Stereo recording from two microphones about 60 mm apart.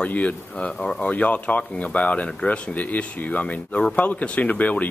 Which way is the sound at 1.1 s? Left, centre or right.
Left.